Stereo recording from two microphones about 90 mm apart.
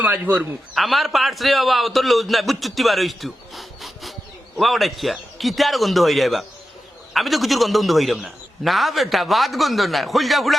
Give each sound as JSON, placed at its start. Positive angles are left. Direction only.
{"t": 0.0, "sound": "a man's voice", "side_deg": -20}
{"t": 0.7, "sound": "a man's voice", "side_deg": 0}